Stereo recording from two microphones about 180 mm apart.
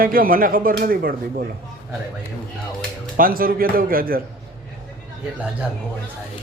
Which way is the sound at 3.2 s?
50° right (ahead or behind).